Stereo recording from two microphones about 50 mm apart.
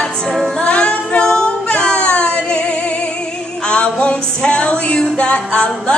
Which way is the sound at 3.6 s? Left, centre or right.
Left.